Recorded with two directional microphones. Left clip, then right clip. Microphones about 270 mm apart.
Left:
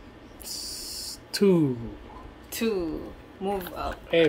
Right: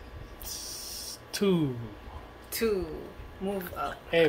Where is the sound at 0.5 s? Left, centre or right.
Left.